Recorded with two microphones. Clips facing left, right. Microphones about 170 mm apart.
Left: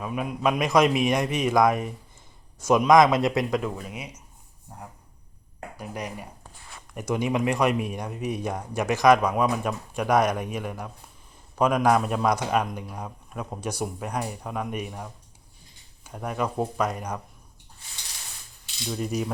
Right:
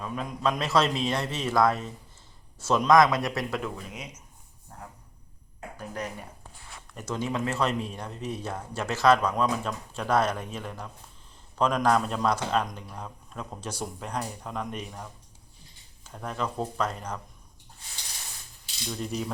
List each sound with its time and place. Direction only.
0.0 s a man's voice: 10° left (ahead or behind)
3.6 s speech: 10° left (ahead or behind)
5.7 s speech: 10° left (ahead or behind)
18.9 s speech: 10° left (ahead or behind)